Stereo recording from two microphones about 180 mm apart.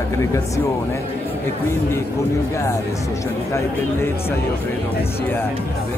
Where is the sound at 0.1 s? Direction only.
15° left (ahead or behind).